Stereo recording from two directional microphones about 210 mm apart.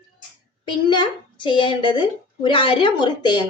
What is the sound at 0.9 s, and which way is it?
A woman's voice, 20° left (ahead or behind).